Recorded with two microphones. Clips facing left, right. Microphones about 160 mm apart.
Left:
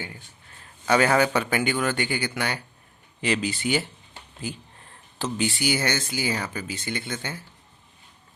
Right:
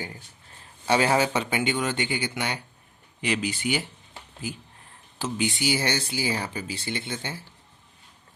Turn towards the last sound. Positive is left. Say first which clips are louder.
# left 1 dB
turn(degrees=-30)  # may be behind; listen again after turning